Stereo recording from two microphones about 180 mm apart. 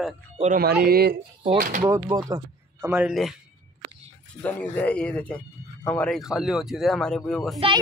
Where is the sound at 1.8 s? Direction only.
20° right (ahead or behind).